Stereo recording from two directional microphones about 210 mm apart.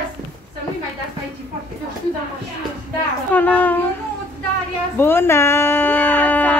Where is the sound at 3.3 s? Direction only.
10° left (ahead or behind).